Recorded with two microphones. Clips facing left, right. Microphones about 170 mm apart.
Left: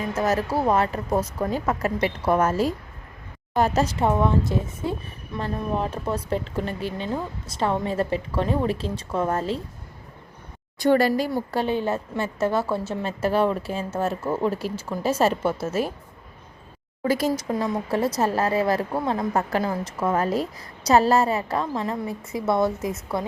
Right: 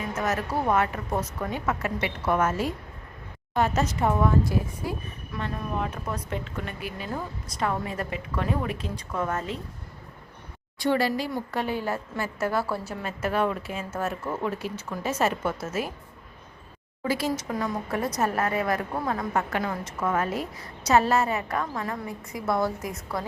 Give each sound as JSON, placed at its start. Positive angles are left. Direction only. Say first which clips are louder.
{"t": 0.2, "sound": "a woman's voice", "louder": "left 5 dB", "side_deg": 35}
{"t": 10.8, "sound": "a woman's voice", "louder": "left 5 dB", "side_deg": 45}
{"t": 17.0, "sound": "speech", "louder": "left 4 dB", "side_deg": 45}
{"t": 17.5, "sound": "speech", "louder": "left 4 dB", "side_deg": 30}